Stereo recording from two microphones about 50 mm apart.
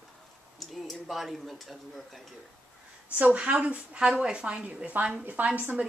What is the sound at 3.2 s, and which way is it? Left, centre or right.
A woman's voice, right.